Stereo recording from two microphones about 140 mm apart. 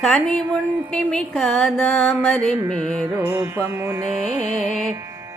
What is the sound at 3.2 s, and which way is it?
Music, 15° right (ahead or behind).